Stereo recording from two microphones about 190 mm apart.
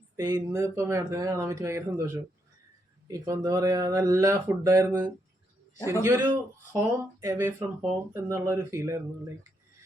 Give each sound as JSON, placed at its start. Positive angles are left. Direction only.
{"t": 0.2, "sound": "speech", "side_deg": -20}